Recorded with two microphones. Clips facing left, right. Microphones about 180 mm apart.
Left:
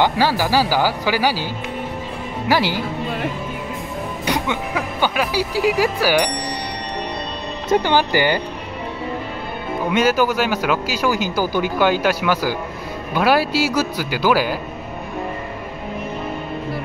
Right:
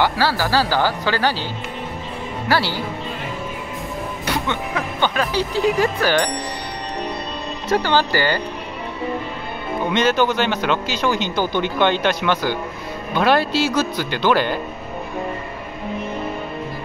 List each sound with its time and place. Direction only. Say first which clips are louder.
0.0 s speech: left 2 dB; 15° left (ahead or behind)
2.4 s speech: left 2 dB; 15° left (ahead or behind)
4.3 s speech: left 2 dB; 10° left (ahead or behind)
7.7 s speech: left 2 dB; 15° left (ahead or behind)
9.8 s speech: left 1 dB; 5° left (ahead or behind)